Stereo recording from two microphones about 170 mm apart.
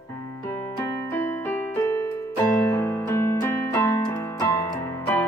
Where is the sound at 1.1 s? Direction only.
15° left (ahead or behind).